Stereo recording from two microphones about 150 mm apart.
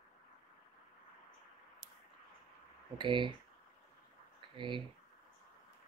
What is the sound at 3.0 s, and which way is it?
Speech, 35° right (ahead or behind).